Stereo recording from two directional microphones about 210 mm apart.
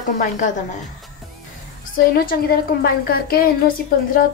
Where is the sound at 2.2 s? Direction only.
45° left (ahead or behind).